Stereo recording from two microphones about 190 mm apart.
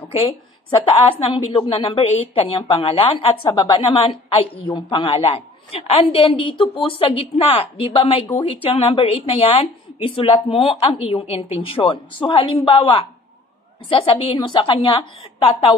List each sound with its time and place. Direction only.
0.1 s a woman's voice: 30° left (ahead or behind)